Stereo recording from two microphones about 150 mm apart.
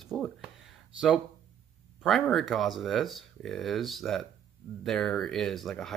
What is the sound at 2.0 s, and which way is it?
Speech, centre (ahead or behind).